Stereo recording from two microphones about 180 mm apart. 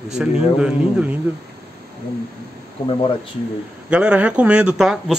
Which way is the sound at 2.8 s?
30° left (ahead or behind).